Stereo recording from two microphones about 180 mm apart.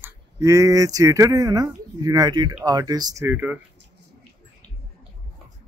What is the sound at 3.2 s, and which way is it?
Speech, 10° right (ahead or behind).